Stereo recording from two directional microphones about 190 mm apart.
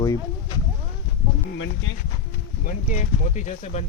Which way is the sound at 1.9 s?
90° left.